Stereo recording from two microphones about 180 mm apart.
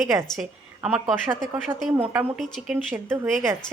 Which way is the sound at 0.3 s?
5° right (ahead or behind).